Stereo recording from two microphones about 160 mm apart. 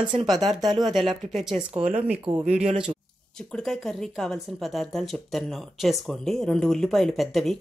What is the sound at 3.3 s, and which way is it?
Speech, 5° left (ahead or behind).